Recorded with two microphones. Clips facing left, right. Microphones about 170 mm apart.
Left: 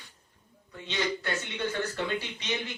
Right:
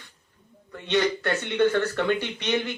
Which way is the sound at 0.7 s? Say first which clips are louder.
Right 8 dB; 60° right (ahead or behind).